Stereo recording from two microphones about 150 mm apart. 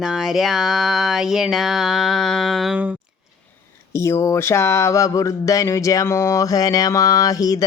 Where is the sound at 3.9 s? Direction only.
20° left (ahead or behind).